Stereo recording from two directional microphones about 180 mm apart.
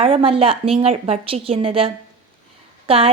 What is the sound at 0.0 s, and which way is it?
Speech, 30° right (ahead or behind).